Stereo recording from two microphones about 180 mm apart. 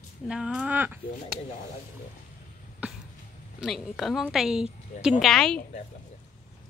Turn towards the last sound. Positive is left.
turn(degrees=5)  # may be behind; listen again after turning